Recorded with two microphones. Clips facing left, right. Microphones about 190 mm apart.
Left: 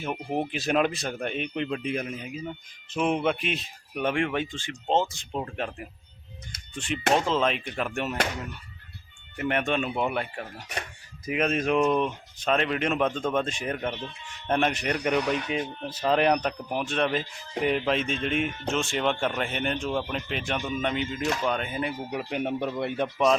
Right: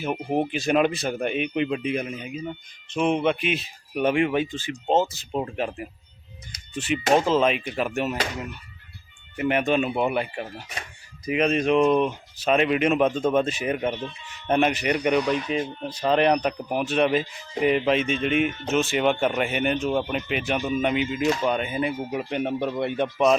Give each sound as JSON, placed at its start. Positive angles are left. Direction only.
{"t": 0.0, "sound": "speech", "side_deg": -5}
{"t": 9.3, "sound": "speech", "side_deg": -5}